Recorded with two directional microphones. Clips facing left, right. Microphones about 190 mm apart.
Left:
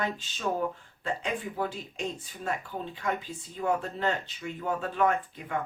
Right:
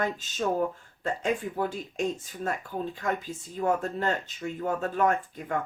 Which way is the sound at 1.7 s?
45° right (ahead or behind).